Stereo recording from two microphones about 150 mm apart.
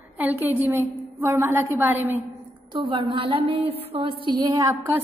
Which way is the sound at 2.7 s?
35° right (ahead or behind).